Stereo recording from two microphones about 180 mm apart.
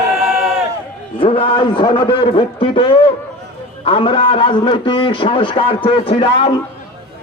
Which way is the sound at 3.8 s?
30° left (ahead or behind).